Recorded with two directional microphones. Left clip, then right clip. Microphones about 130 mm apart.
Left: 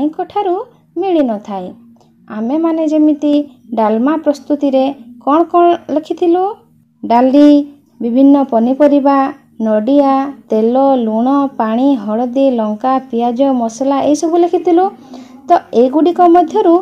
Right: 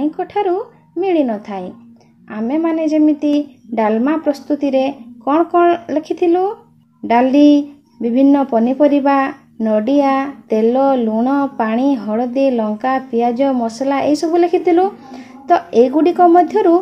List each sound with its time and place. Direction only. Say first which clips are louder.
0.0 s speech: left 2 dB; 35° left (ahead or behind)